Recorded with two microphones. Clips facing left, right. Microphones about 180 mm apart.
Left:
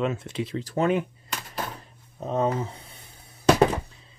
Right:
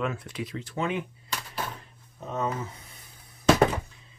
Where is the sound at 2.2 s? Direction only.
30° left (ahead or behind).